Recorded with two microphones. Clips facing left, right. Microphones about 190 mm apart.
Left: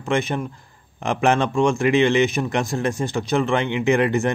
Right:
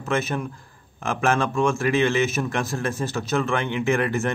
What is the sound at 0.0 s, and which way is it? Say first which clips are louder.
Speech: left 3 dB; 15° left (ahead or behind).